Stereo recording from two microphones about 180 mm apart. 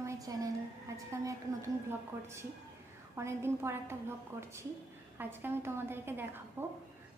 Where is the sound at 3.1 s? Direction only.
15° right (ahead or behind).